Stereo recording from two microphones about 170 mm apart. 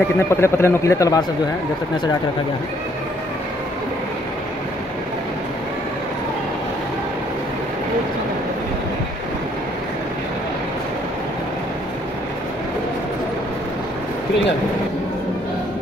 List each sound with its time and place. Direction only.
0.3 s a man's voice: 15° left (ahead or behind)